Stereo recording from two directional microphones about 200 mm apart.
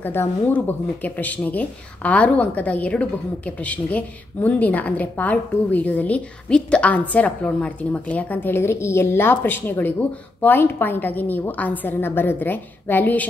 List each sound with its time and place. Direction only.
0.0 s speech: 10° left (ahead or behind)